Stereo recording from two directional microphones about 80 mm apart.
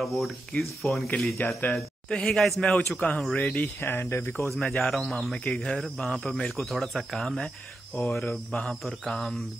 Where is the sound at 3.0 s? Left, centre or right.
Centre; by 4.4 s left.